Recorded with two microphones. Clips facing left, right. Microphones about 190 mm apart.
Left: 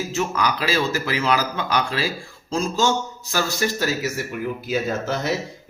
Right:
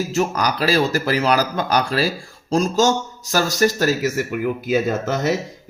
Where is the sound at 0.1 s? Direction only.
40° right (ahead or behind).